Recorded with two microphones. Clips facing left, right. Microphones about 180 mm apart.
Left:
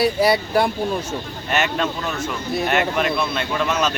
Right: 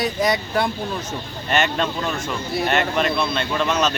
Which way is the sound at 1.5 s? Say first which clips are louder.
Right 1 dB; 5° left (ahead or behind).